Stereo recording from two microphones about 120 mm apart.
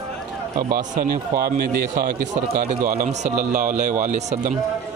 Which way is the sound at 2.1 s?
90° right.